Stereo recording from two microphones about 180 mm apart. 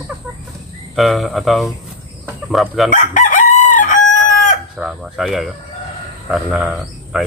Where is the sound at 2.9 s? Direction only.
45° left (ahead or behind).